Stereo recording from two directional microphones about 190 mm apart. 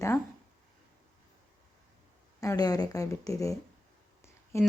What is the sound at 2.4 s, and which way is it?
Speech, 20° left (ahead or behind).